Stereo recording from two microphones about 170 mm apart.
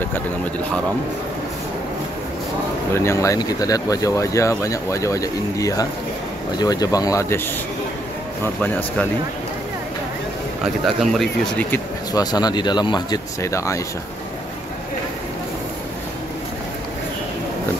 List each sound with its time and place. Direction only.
2.9 s speech: 15° left (ahead or behind)
8.6 s speech: 10° left (ahead or behind)
10.6 s speech: 5° right (ahead or behind)
12.1 s speech: 25° left (ahead or behind)